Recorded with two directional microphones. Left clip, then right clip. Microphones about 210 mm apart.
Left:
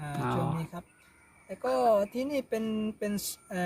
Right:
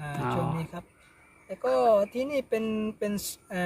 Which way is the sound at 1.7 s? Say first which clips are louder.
Right 3 dB; 15° right (ahead or behind).